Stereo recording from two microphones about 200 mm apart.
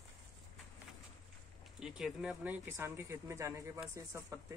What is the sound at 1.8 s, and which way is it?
Speech, centre (ahead or behind).